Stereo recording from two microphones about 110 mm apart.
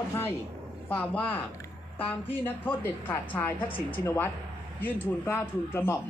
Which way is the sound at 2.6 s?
15° left (ahead or behind).